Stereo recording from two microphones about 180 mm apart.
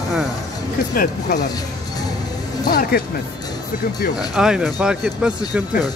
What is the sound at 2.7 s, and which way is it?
Speech, 55° left (ahead or behind).